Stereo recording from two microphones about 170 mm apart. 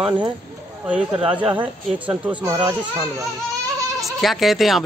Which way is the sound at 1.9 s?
10° right (ahead or behind).